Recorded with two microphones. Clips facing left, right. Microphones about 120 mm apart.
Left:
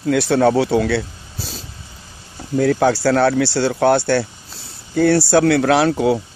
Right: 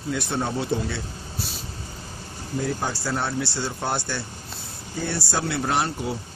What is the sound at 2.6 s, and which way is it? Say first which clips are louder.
Speech: left 13 dB; 80° left.